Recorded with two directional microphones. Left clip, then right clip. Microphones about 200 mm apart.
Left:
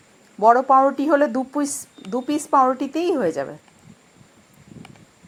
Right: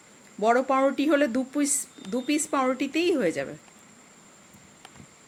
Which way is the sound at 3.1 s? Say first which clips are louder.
Left 4 dB; 20° right (ahead or behind).